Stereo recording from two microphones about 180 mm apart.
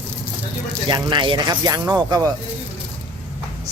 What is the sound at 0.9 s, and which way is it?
Speech, 25° right (ahead or behind).